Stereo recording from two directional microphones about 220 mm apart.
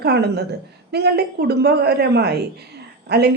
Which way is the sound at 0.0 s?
45° right (ahead or behind).